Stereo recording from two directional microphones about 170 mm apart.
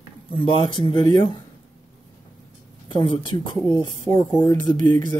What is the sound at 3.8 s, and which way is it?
Speech, 15° left (ahead or behind).